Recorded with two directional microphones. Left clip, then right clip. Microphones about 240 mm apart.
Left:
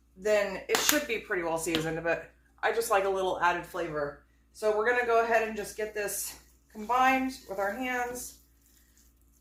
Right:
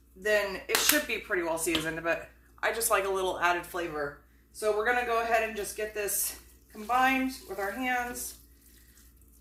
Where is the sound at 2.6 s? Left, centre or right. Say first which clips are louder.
Left 1 dB; centre.